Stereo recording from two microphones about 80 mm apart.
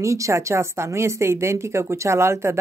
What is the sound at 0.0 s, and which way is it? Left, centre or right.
Speech, right.